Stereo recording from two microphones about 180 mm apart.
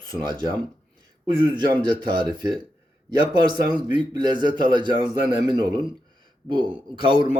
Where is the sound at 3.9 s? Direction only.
25° right (ahead or behind).